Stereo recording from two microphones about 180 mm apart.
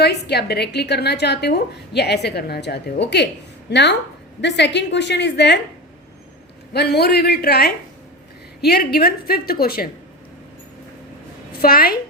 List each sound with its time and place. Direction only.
0.0 s a woman's voice: 65° left (ahead or behind)
6.7 s a woman's voice: 65° left (ahead or behind)
11.5 s a woman's voice: 55° left (ahead or behind)